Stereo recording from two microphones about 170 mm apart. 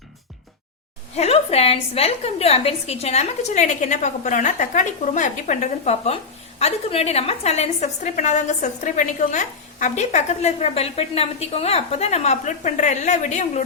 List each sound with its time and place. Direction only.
1.1 s a woman's voice: 40° left (ahead or behind)